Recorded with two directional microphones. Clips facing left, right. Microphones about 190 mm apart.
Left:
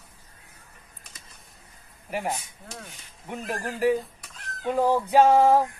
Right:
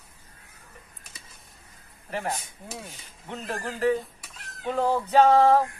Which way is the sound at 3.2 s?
10° left (ahead or behind).